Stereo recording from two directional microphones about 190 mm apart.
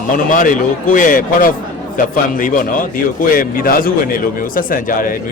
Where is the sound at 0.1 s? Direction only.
45° left (ahead or behind).